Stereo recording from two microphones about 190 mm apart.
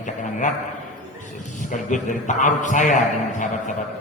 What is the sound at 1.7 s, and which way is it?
A man's voice, 40° left (ahead or behind).